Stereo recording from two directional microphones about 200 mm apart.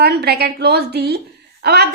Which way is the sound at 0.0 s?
55° right (ahead or behind).